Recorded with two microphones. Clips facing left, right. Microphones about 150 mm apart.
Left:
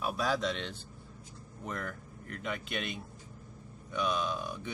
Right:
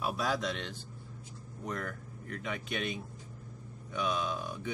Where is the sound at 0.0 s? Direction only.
5° right (ahead or behind).